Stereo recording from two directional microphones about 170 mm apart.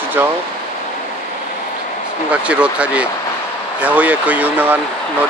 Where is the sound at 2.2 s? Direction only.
5° right (ahead or behind).